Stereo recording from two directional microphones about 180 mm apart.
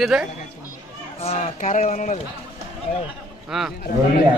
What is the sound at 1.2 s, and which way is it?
Speech, 35° left (ahead or behind).